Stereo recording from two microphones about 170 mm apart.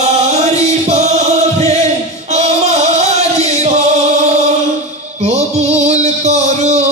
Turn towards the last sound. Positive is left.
turn(degrees=-40)  # may be behind; listen again after turning